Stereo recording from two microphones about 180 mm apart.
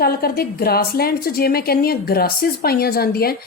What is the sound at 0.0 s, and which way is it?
A woman's voice, 55° left (ahead or behind).